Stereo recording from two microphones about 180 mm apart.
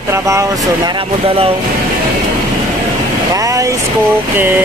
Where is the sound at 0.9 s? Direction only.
30° right (ahead or behind).